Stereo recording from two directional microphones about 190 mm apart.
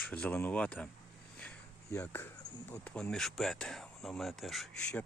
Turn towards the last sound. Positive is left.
turn(degrees=5)  # may be behind; listen again after turning